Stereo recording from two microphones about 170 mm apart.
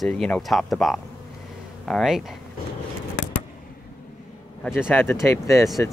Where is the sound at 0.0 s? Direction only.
Centre (ahead or behind).